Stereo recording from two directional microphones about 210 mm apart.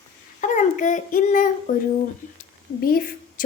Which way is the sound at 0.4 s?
35° left (ahead or behind).